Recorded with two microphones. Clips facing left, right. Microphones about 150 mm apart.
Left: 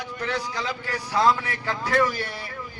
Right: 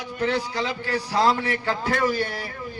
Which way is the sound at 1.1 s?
30° right (ahead or behind).